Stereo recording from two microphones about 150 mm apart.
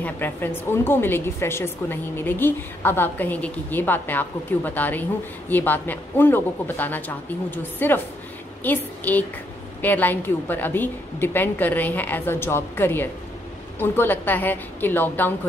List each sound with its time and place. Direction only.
0.0 s a woman's voice: 15° left (ahead or behind)